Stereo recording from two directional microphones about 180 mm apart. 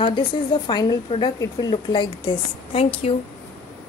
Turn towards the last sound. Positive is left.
turn(degrees=35)  # may be behind; listen again after turning